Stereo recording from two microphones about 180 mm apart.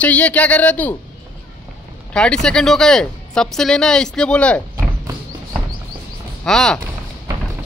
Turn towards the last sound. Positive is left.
turn(degrees=5)  # may be behind; listen again after turning